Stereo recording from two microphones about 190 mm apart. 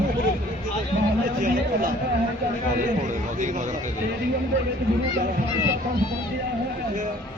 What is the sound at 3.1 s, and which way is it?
Speech, 40° right (ahead or behind).